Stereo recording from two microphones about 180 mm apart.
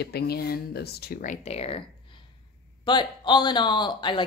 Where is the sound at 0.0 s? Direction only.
60° left (ahead or behind).